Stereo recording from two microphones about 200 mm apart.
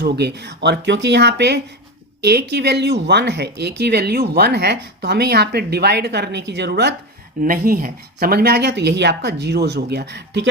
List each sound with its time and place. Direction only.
0.0 s speech: 55° right (ahead or behind)
7.4 s speech: 45° right (ahead or behind)